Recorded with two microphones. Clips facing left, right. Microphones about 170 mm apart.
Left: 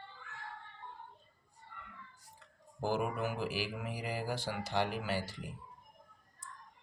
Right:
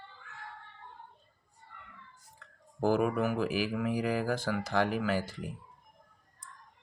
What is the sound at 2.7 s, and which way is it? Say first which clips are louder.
Speech: right 7 dB; 50° right (ahead or behind).